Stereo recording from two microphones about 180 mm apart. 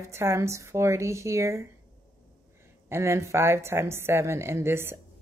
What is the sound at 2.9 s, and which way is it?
A woman's voice, 15° right (ahead or behind).